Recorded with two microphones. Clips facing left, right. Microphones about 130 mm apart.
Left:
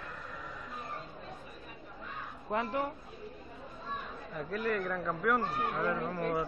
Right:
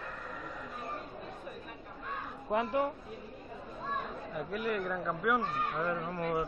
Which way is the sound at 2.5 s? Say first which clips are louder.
Right 2 dB; 15° right (ahead or behind).